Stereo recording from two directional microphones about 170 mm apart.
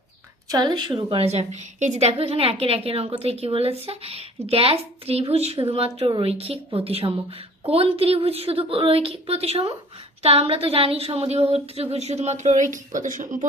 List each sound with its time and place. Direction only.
0.5 s a woman's voice: 25° right (ahead or behind); by 13.5 s 50° right (ahead or behind)